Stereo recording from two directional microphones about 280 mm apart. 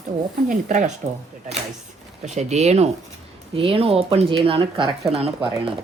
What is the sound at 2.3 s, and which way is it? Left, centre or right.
Speech, right.